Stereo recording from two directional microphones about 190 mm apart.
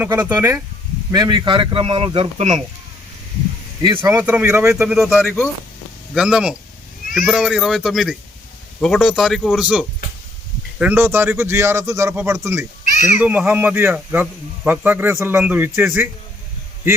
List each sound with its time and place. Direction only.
0.0 s a man's voice: 10° right (ahead or behind); by 2.6 s 30° right (ahead or behind)
3.8 s a man's voice: 15° right (ahead or behind)
5.2 s speech: 10° left (ahead or behind)
6.1 s a man's voice: 5° right (ahead or behind)
12.8 s a sound: 40° left (ahead or behind)
13.1 s a man's voice: 10° right (ahead or behind)